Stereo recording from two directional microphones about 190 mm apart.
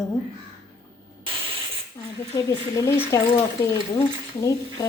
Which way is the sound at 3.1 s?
15° left (ahead or behind).